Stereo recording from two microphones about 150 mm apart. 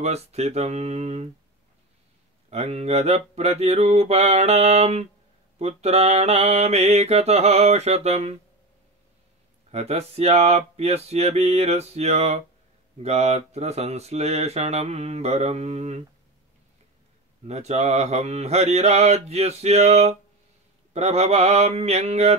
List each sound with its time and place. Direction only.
0.0 s speech: 45° right (ahead or behind)
2.5 s speech: 45° right (ahead or behind)
9.7 s speech: 45° right (ahead or behind)
17.5 s speech: 45° right (ahead or behind)